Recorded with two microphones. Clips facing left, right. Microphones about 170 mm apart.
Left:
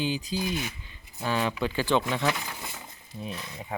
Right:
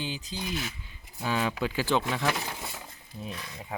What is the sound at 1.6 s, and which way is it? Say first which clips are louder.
Speech: left 2 dB; 5° right (ahead or behind).